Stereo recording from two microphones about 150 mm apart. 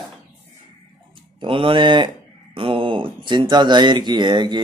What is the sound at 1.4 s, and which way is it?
Speech, 35° right (ahead or behind).